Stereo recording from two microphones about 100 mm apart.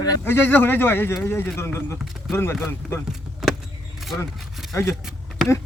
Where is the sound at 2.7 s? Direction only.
25° left (ahead or behind).